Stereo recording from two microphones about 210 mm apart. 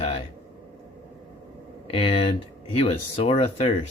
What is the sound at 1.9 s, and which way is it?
Speech, 30° left (ahead or behind).